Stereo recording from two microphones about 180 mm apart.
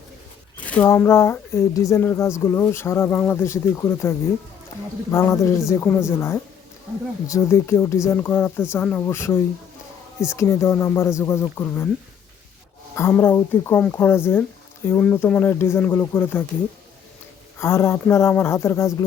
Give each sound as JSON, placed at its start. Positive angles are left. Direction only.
{"t": 0.6, "sound": "speech", "side_deg": 10}
{"t": 13.0, "sound": "speech", "side_deg": 15}
{"t": 17.6, "sound": "speech", "side_deg": 15}